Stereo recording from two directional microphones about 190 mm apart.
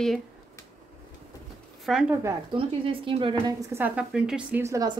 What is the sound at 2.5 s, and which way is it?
Speech, 30° right (ahead or behind).